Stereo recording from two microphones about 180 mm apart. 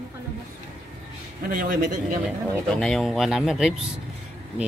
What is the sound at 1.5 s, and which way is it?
Speech, 50° right (ahead or behind).